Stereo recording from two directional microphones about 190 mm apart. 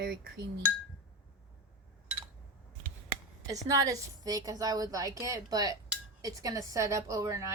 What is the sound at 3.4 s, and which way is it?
A woman's voice, 15° right (ahead or behind).